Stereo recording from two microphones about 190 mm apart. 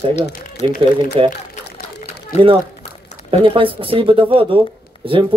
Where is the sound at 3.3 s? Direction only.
30° right (ahead or behind).